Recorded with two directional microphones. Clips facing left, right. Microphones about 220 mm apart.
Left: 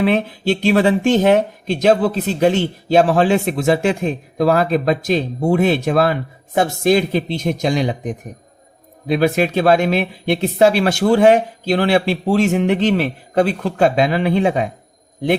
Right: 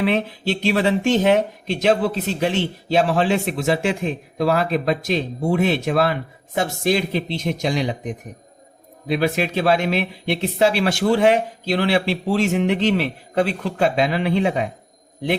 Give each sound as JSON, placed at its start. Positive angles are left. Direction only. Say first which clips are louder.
{"t": 0.1, "sound": "a man's voice", "louder": "left 4 dB", "side_deg": 45}